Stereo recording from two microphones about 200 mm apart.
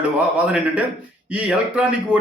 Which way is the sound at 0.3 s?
5° right (ahead or behind).